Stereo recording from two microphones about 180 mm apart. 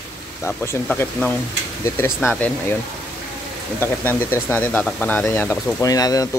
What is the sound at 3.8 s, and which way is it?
Speech, 10° left (ahead or behind).